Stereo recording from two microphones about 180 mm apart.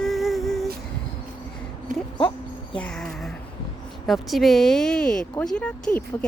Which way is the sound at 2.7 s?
5° left (ahead or behind).